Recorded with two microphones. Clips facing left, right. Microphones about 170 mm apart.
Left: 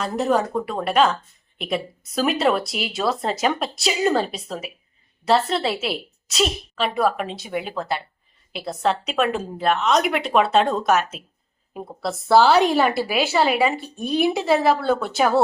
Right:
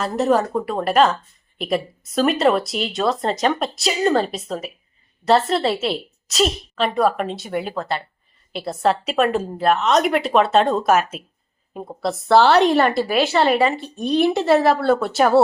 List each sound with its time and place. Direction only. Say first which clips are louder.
0.0 s a woman's voice: right 2 dB; centre (ahead or behind)